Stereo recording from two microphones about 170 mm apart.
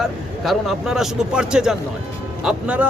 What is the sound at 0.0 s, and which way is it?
A man's voice, centre (ahead or behind).